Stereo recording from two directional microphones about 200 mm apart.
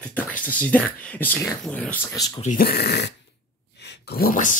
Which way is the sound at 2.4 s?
45° left (ahead or behind).